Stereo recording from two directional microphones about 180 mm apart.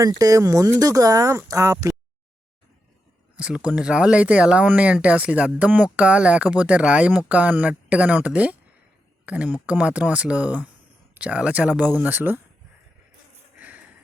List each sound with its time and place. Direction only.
0.0 s speech: 20° right (ahead or behind)
3.3 s speech: 5° right (ahead or behind)
13.6 s a sound: 10° right (ahead or behind)